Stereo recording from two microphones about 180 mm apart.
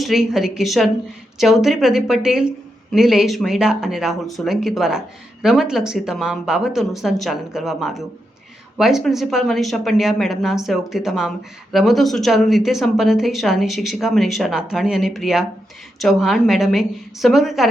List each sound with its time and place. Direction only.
0.0 s speech: centre (ahead or behind)